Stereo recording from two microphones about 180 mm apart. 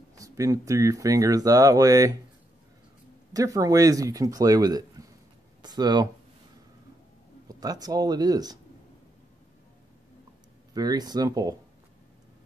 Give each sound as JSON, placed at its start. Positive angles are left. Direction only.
{"t": 0.1, "sound": "speech", "side_deg": -20}
{"t": 3.3, "sound": "speech", "side_deg": -20}
{"t": 7.4, "sound": "speech", "side_deg": -20}
{"t": 10.7, "sound": "speech", "side_deg": -20}